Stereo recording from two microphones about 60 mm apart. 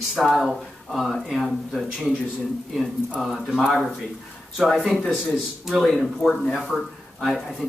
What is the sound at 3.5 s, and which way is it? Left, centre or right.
Speech, centre.